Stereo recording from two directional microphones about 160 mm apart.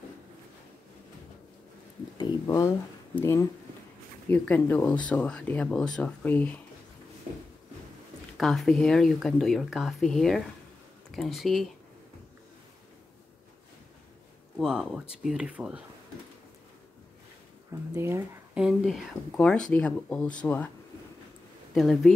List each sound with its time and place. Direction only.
2.1 s speech: 25° left (ahead or behind)
8.4 s speech: centre (ahead or behind)
14.6 s speech: 5° right (ahead or behind)
17.9 s speech: 15° right (ahead or behind)
18.6 s speech: 5° right (ahead or behind)
21.7 s speech: centre (ahead or behind)